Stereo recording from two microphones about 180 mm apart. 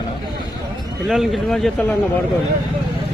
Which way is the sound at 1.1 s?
Centre (ahead or behind).